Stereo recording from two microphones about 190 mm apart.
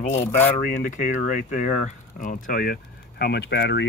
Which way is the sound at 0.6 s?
45° left (ahead or behind).